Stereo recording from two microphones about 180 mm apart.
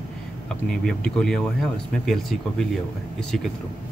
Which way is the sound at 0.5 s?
5° left (ahead or behind).